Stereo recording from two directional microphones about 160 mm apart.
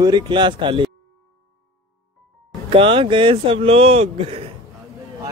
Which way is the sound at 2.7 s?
35° right (ahead or behind).